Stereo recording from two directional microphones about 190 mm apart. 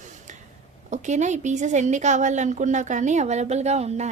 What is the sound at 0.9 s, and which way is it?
A woman's voice, 40° right (ahead or behind).